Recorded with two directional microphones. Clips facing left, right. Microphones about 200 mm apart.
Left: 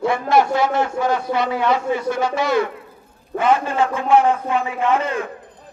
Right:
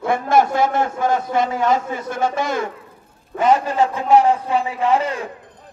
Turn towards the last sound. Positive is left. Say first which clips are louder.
# right 1 dB
turn(degrees=-35)  # may be behind; listen again after turning